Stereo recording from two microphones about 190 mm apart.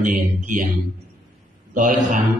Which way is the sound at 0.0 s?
45° right (ahead or behind).